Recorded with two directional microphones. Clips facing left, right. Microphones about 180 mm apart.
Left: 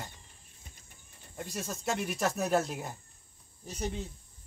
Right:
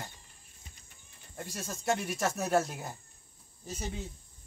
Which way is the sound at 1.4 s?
Centre (ahead or behind).